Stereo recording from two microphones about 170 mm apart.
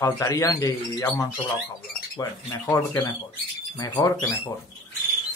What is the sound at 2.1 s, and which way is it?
Speech, 20° left (ahead or behind).